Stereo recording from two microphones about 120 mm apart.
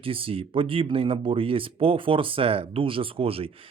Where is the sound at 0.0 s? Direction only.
50° right (ahead or behind).